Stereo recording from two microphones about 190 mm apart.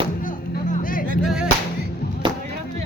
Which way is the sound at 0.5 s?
45° left (ahead or behind).